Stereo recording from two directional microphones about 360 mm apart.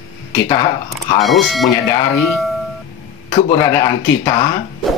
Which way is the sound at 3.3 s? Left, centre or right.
Centre.